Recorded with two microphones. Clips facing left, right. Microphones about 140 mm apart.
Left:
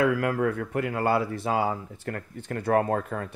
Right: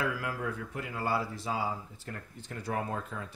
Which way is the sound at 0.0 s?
60° left (ahead or behind).